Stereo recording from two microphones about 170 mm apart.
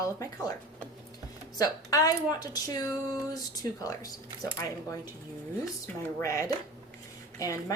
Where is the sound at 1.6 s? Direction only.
20° left (ahead or behind).